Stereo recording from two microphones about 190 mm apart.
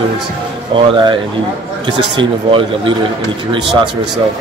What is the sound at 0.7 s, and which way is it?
A man's voice, 25° right (ahead or behind).